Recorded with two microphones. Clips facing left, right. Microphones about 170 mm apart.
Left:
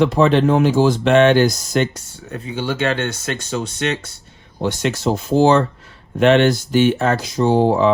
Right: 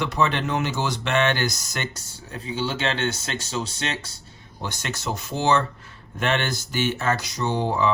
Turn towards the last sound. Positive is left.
turn(degrees=55)  # may be behind; listen again after turning